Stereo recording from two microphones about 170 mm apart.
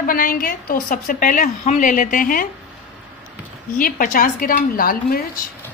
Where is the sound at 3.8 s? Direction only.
55° left (ahead or behind).